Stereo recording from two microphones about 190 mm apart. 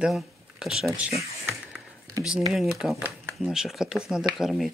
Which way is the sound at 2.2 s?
15° right (ahead or behind).